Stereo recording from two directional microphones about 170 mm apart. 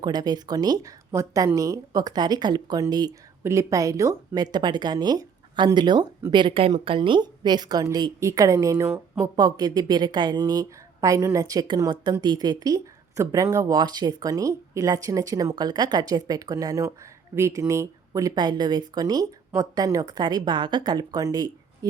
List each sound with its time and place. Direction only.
0.0 s a woman's voice: 25° right (ahead or behind)